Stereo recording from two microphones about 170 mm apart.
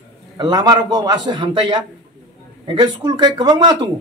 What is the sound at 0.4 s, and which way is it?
A man's voice, 25° right (ahead or behind).